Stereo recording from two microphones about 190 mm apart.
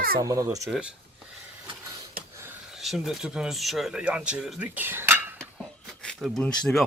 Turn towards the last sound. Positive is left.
turn(degrees=0)  # may be behind; listen again after turning